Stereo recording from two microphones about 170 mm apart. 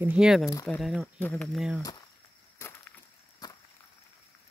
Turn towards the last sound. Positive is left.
turn(degrees=25)  # may be behind; listen again after turning